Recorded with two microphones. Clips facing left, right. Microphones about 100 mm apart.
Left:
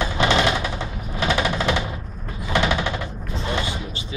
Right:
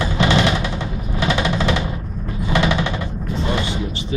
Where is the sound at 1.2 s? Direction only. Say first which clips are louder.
Right 2 dB; centre (ahead or behind).